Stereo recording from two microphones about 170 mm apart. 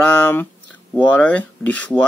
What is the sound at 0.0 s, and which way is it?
Speech, 10° left (ahead or behind).